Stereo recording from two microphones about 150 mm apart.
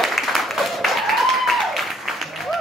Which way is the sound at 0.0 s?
Centre (ahead or behind).